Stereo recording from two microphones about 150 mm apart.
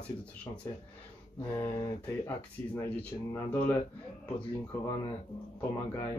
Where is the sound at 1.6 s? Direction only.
15° left (ahead or behind).